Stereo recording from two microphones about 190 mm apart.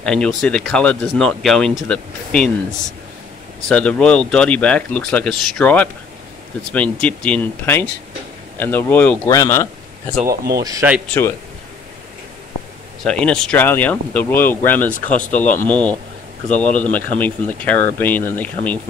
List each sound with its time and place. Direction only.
0.0 s speech: 5° left (ahead or behind)
3.6 s speech: 5° left (ahead or behind)
10.2 s speech: 55° right (ahead or behind)
10.6 s speech: 20° right (ahead or behind)
13.0 s speech: 5° left (ahead or behind)